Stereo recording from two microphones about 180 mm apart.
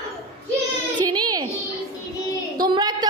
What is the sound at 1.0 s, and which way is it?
Speech, 20° right (ahead or behind).